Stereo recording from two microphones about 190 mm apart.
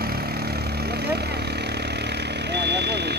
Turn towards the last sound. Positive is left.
turn(degrees=-60)  # may be behind; listen again after turning